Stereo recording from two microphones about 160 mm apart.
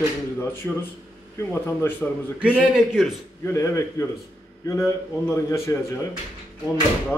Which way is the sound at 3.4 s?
20° left (ahead or behind).